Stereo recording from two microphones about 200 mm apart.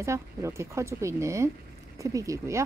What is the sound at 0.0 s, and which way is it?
Speech, 15° right (ahead or behind).